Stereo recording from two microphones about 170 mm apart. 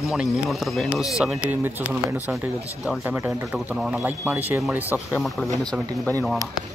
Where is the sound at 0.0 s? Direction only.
Centre (ahead or behind).